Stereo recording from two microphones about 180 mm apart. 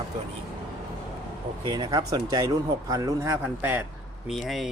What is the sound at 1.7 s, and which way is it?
Speech, 25° right (ahead or behind).